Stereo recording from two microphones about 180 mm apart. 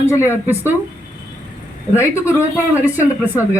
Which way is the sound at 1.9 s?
15° left (ahead or behind).